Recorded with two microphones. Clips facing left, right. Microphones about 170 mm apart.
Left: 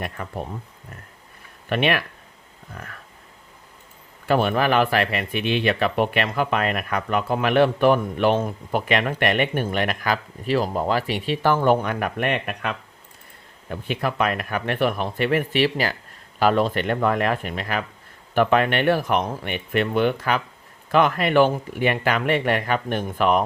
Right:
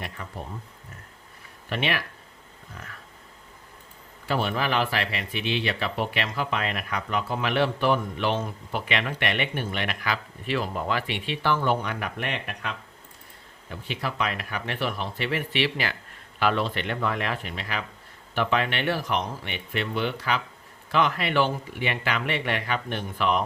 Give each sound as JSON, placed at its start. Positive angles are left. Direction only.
{"t": 0.0, "sound": "speech", "side_deg": 60}
{"t": 1.7, "sound": "speech", "side_deg": 60}
{"t": 4.3, "sound": "speech", "side_deg": 55}